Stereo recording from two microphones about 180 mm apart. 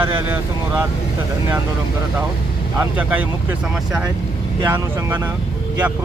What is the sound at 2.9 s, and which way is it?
Speech, 10° right (ahead or behind).